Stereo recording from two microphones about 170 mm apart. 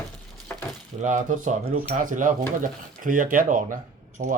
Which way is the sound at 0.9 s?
45° right (ahead or behind).